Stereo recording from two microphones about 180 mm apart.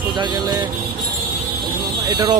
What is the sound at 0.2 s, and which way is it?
Speech, 25° right (ahead or behind).